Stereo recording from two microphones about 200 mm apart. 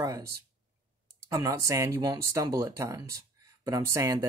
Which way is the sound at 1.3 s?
15° right (ahead or behind).